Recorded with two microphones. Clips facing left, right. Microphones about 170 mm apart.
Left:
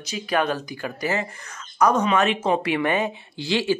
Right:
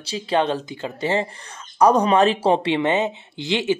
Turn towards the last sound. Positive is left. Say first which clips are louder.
# right 1 dB
turn(degrees=-20)  # may be behind; listen again after turning